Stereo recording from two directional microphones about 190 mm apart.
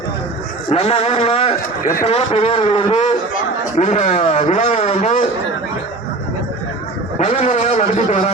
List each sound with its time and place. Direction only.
0.7 s speech: 35° left (ahead or behind)
7.2 s speech: 40° left (ahead or behind)